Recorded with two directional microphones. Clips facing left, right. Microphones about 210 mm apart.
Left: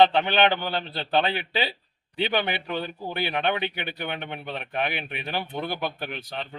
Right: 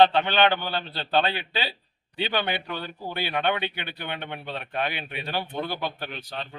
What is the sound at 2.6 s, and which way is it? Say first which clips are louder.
A man's voice: left 3 dB; 15° left (ahead or behind).